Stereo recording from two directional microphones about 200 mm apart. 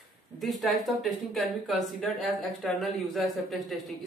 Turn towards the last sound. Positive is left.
turn(degrees=0)  # may be behind; listen again after turning